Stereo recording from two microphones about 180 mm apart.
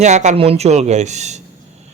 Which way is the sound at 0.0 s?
40° right (ahead or behind).